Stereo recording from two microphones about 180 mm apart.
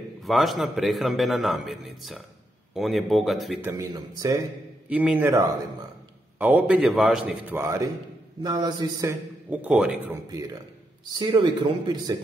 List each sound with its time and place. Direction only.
0.2 s a man's voice: centre (ahead or behind)
3.6 s a man's voice: 20° right (ahead or behind)
4.8 s a man's voice: 10° right (ahead or behind)
9.5 s a man's voice: 10° right (ahead or behind)
11.1 s a man's voice: 25° right (ahead or behind)